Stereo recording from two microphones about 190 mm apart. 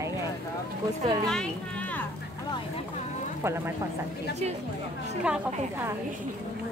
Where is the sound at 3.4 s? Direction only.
15° right (ahead or behind).